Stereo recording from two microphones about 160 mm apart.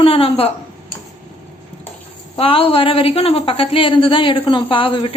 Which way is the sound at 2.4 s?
35° left (ahead or behind).